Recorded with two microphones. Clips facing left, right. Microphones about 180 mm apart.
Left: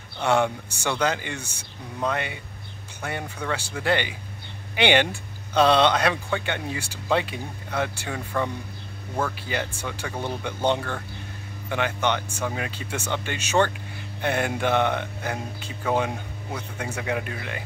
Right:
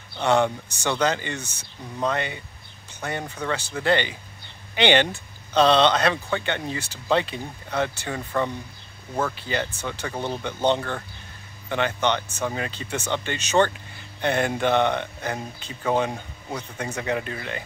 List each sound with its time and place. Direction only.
0.2 s speech: 10° left (ahead or behind)
9.5 s speech: 10° left (ahead or behind)